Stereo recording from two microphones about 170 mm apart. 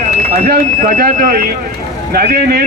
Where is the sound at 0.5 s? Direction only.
60° right (ahead or behind).